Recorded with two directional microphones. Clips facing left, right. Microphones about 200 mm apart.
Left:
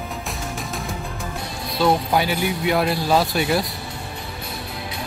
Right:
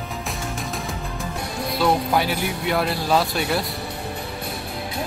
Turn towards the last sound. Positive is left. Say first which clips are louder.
# left 2 dB
turn(degrees=0)  # may be behind; listen again after turning